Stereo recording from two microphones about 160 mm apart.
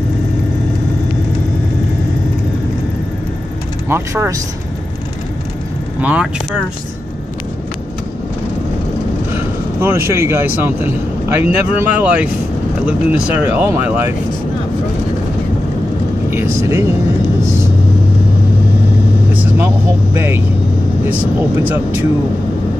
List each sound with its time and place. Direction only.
3.9 s speech: 15° right (ahead or behind)
5.9 s speech: 10° right (ahead or behind)
9.3 s speech: 15° right (ahead or behind)
16.3 s vehicle: 15° right (ahead or behind)
19.3 s vehicle: 15° right (ahead or behind)
20.2 s speech: 15° right (ahead or behind)
21.6 s speech: 10° right (ahead or behind)